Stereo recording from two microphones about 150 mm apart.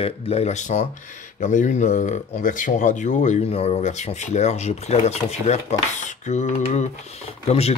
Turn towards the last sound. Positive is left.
turn(degrees=45)  # may be behind; listen again after turning